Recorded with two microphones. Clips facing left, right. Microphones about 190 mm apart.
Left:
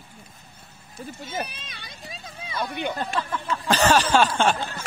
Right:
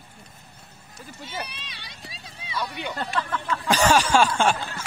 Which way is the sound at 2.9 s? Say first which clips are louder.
Left 1 dB; 10° left (ahead or behind).